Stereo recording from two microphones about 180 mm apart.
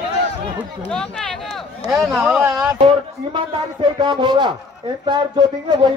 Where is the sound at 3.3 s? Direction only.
25° right (ahead or behind).